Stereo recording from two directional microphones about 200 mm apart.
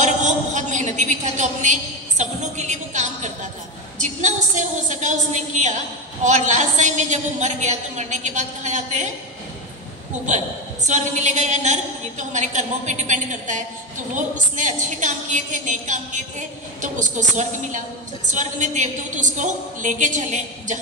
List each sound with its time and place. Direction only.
0.0 s a sound: 35° right (ahead or behind)
4.8 s a woman's voice: 35° right (ahead or behind)
10.2 s a woman's voice: 35° right (ahead or behind)